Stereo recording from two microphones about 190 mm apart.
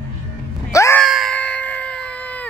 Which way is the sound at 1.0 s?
Centre (ahead or behind).